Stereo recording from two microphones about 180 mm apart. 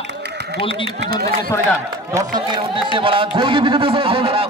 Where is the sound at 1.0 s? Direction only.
60° right (ahead or behind).